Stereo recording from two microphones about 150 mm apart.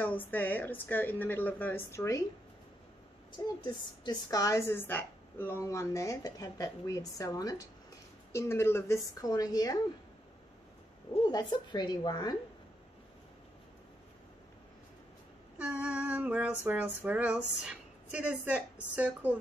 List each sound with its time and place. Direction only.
0.0 s speech: 10° left (ahead or behind)
3.6 s a woman's voice: 30° left (ahead or behind)
11.2 s a woman's voice: 30° left (ahead or behind)
15.5 s female singing: 10° right (ahead or behind)